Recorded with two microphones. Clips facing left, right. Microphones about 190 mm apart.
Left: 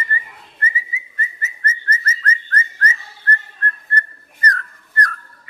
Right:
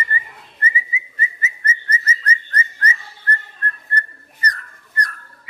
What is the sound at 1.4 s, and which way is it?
Whistling, 10° right (ahead or behind).